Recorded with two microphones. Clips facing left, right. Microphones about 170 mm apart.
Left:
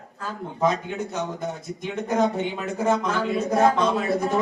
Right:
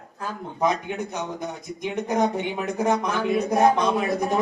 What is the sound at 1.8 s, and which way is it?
Speech, 15° right (ahead or behind).